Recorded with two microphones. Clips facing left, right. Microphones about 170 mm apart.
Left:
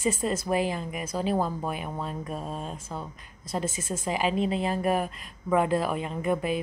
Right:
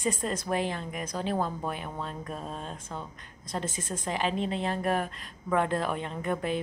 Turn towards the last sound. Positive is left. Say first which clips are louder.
# left 3 dB
turn(degrees=10)  # may be behind; listen again after turning